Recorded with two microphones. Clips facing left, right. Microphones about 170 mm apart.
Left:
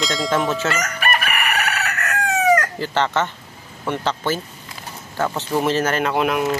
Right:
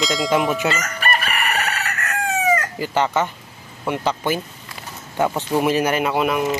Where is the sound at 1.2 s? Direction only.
65° left (ahead or behind).